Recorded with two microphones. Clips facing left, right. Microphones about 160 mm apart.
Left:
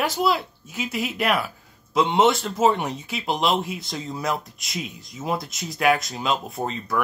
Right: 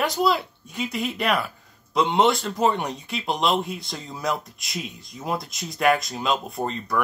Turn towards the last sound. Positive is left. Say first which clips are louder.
# even
turn(degrees=0)  # may be behind; listen again after turning